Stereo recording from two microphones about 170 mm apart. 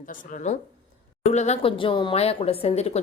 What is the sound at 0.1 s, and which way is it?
Speech, 50° left (ahead or behind).